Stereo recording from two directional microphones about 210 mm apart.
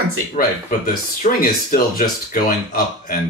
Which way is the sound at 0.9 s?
40° left (ahead or behind).